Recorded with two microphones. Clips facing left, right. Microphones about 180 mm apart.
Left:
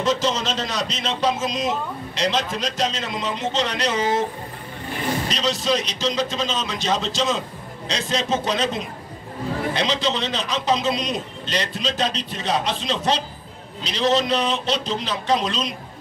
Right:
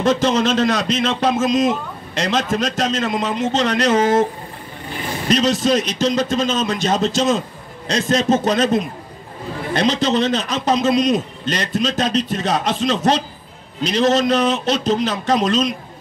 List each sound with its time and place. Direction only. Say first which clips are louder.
0.0 s a man's voice: right 6 dB; 55° right (ahead or behind)
5.3 s a man's voice: right 10 dB; 50° right (ahead or behind)